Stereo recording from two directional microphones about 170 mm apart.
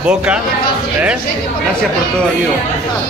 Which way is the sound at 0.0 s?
5° right (ahead or behind).